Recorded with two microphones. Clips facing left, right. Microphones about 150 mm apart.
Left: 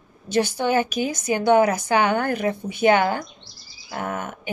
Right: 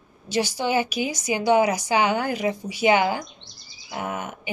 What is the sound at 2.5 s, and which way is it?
Speech, 10° right (ahead or behind).